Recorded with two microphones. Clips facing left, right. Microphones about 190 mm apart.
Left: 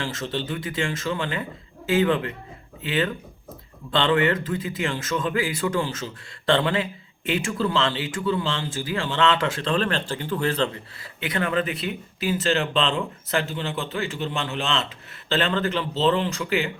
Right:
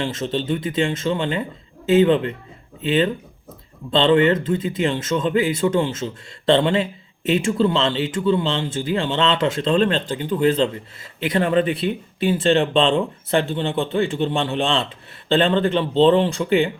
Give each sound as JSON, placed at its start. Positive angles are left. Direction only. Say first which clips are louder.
{"t": 0.0, "sound": "speech", "louder": "right 5 dB", "side_deg": -25}